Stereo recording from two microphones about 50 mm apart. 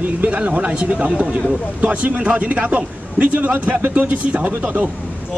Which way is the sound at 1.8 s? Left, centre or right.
Right.